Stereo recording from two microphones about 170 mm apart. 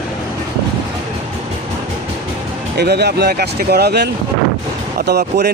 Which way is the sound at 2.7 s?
75° right (ahead or behind).